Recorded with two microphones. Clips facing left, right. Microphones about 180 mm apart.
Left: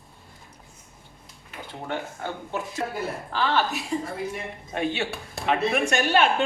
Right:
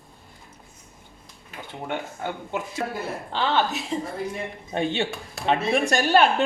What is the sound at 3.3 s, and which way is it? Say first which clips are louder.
A woman's voice: right 1 dB; 25° right (ahead or behind).